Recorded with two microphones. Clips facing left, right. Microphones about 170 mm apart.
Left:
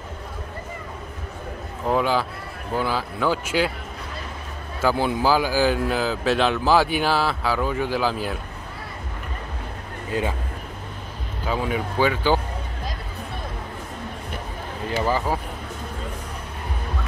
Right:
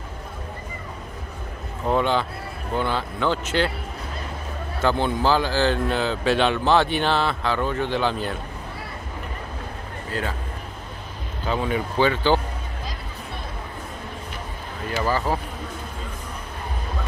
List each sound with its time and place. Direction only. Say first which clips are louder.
1.9 s speech: even; 5° left (ahead or behind)
4.8 s speech: left 1 dB; 5° left (ahead or behind)
10.1 s a man's voice: left 4 dB; 20° left (ahead or behind)
11.4 s speech: right 1 dB; 5° left (ahead or behind)
15.0 s speech: even; 15° left (ahead or behind)